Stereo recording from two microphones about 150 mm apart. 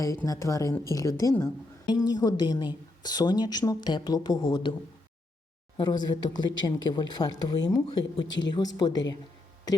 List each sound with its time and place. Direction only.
0.0 s a woman's voice: 20° left (ahead or behind)
5.7 s a woman's voice: 30° left (ahead or behind)